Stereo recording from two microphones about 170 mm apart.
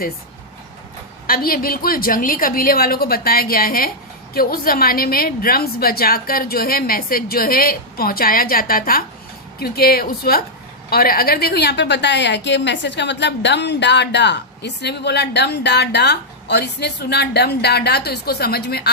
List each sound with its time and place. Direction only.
1.3 s a woman's voice: 60° left (ahead or behind)